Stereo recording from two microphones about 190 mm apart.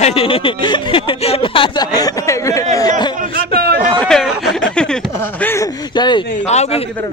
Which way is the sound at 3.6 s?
55° right (ahead or behind).